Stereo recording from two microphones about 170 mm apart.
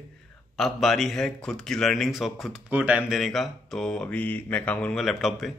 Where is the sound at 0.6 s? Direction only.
Centre (ahead or behind).